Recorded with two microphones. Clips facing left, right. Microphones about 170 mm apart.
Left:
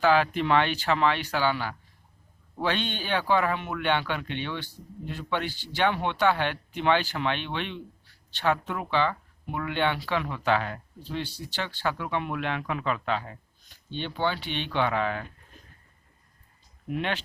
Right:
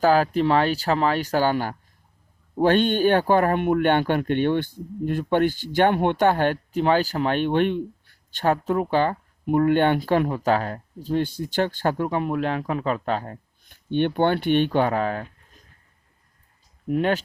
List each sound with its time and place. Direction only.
0.0 s speech: 40° right (ahead or behind)
16.9 s speech: 40° right (ahead or behind)